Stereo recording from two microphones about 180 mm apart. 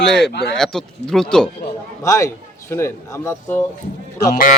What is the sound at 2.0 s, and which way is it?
A man's voice, 20° left (ahead or behind).